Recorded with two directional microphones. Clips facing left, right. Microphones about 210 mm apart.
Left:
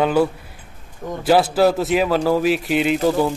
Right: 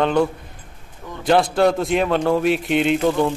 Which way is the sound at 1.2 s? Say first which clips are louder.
Left 1 dB; 5° left (ahead or behind).